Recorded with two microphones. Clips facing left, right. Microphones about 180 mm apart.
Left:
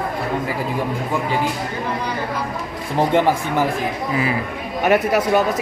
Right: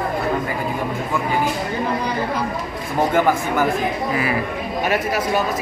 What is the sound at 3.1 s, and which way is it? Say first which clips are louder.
Speech: even; 30° left (ahead or behind).